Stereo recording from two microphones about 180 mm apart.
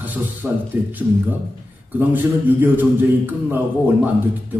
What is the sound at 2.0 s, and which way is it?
Speech, 10° right (ahead or behind).